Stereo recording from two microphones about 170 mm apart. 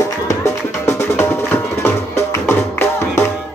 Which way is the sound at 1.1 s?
15° left (ahead or behind).